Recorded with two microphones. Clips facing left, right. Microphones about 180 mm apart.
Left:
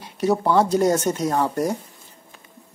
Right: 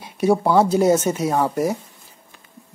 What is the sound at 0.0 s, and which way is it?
Speech, 10° right (ahead or behind).